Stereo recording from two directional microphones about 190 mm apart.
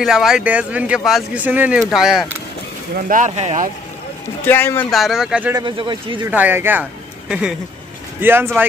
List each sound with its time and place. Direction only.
0.0 s speech: centre (ahead or behind)
3.1 s speech: 40° right (ahead or behind)
4.5 s speech: 10° left (ahead or behind)
4.9 s speech: centre (ahead or behind)
5.5 s speech: 25° right (ahead or behind)
6.2 s speech: 10° right (ahead or behind)